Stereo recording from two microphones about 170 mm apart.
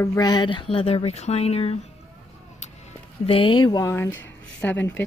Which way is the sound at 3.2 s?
30° left (ahead or behind).